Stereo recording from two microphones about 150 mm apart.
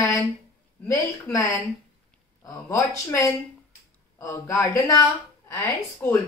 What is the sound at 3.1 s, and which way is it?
Speech, 20° left (ahead or behind).